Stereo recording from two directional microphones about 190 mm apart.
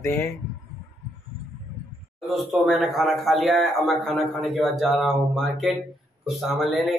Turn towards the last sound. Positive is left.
turn(degrees=0)  # may be behind; listen again after turning